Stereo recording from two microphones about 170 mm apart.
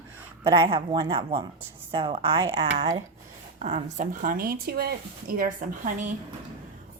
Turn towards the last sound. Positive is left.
turn(degrees=-50)  # may be behind; listen again after turning